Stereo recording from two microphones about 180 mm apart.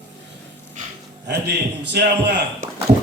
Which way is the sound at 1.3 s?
70° right (ahead or behind).